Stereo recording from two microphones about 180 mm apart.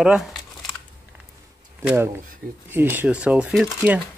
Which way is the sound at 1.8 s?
10° right (ahead or behind).